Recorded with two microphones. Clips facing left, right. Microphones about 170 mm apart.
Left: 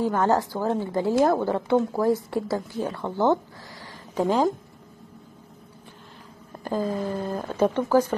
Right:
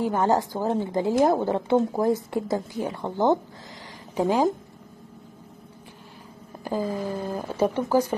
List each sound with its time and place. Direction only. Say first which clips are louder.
0.0 s a woman's voice: even; 15° right (ahead or behind)
6.6 s a sound: left 1 dB; 10° right (ahead or behind)
7.3 s a woman's voice: left 1 dB; 10° right (ahead or behind)